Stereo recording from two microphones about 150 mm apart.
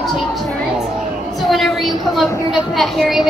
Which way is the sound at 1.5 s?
Centre (ahead or behind).